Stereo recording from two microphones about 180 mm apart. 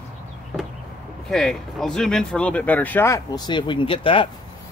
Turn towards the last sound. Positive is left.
turn(degrees=30)  # may be behind; listen again after turning